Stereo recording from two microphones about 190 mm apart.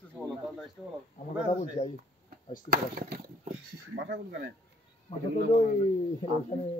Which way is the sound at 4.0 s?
60° right (ahead or behind).